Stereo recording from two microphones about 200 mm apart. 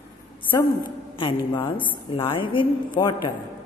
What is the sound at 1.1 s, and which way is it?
A woman's voice, 25° left (ahead or behind).